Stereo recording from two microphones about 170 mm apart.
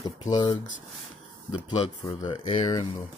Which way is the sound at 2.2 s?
25° left (ahead or behind).